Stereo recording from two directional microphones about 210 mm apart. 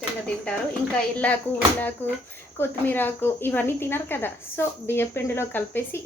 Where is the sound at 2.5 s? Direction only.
10° left (ahead or behind).